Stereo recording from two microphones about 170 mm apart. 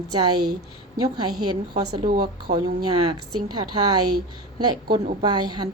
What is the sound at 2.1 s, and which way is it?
Speech, 45° right (ahead or behind).